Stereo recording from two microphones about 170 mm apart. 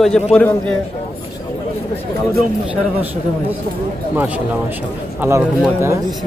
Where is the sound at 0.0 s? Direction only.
5° left (ahead or behind).